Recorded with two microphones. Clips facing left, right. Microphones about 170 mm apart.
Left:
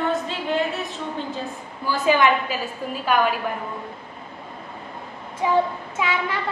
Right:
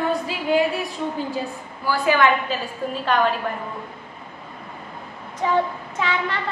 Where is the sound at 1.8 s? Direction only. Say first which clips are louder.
Even; 20° left (ahead or behind).